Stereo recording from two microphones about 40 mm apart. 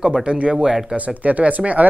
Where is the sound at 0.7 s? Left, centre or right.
Centre.